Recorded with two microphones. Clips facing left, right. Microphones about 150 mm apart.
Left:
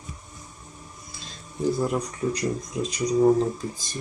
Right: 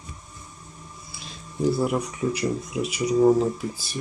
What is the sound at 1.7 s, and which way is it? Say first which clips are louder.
Speech: right 1 dB; 10° right (ahead or behind).